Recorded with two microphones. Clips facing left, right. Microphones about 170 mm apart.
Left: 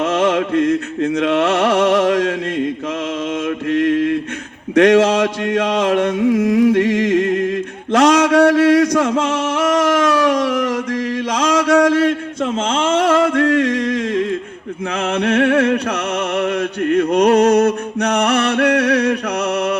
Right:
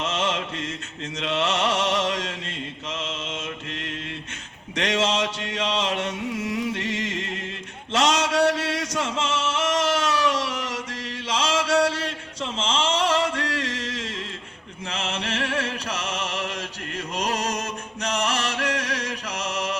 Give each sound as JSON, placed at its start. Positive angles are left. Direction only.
{"t": 0.0, "sound": "music", "side_deg": 55}
{"t": 3.7, "sound": "mantra", "side_deg": 55}
{"t": 4.7, "sound": "speech", "side_deg": 55}
{"t": 6.1, "sound": "a sound", "side_deg": 90}
{"t": 6.4, "sound": "music", "side_deg": 50}
{"t": 7.9, "sound": "a sound", "side_deg": 55}
{"t": 14.9, "sound": "music", "side_deg": 60}